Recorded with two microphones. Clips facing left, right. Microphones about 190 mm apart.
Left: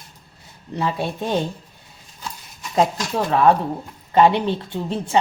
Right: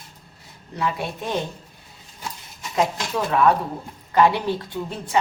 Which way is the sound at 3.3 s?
30° left (ahead or behind).